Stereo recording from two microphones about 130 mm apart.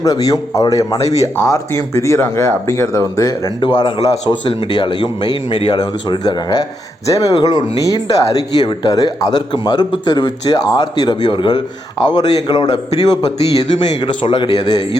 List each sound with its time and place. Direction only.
0.0 s speech: 25° left (ahead or behind)